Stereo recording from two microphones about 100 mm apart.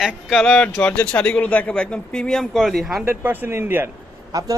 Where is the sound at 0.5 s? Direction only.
15° left (ahead or behind).